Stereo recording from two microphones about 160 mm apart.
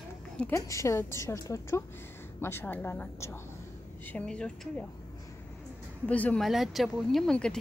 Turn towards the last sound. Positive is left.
turn(degrees=5)  # may be behind; listen again after turning